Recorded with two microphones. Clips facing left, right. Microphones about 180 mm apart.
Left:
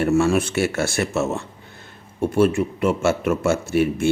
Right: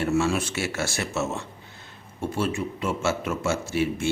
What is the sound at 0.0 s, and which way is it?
Speech, 55° left (ahead or behind).